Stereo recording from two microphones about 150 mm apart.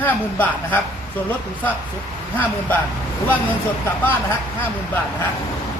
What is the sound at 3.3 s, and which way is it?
Speech, 10° left (ahead or behind).